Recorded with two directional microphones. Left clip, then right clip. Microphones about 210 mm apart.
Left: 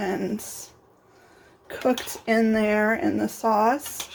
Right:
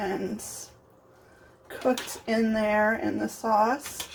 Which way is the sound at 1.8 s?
40° left (ahead or behind).